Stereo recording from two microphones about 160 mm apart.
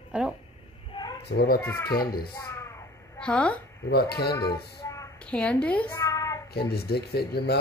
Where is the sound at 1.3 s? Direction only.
90° left.